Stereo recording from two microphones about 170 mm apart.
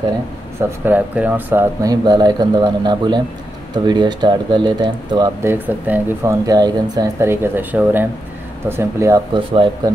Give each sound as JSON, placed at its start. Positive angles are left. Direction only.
{"t": 0.6, "sound": "speech", "side_deg": -15}
{"t": 5.5, "sound": "speech", "side_deg": -10}